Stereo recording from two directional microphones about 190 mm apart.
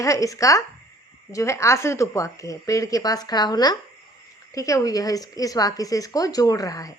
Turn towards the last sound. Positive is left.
turn(degrees=20)  # may be behind; listen again after turning